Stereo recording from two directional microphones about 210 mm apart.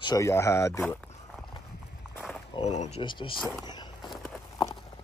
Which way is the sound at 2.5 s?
30° left (ahead or behind).